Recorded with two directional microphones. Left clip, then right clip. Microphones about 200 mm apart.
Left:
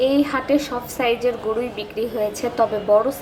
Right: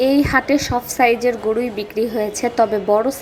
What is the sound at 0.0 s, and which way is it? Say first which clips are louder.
A woman's voice: right 3 dB; 30° right (ahead or behind).